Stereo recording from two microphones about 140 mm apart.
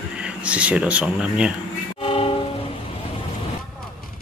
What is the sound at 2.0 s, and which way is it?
Music, 40° left (ahead or behind).